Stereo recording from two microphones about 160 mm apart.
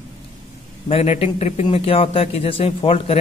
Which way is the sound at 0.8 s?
40° left (ahead or behind).